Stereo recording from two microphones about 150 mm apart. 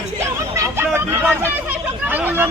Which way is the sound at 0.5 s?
20° right (ahead or behind).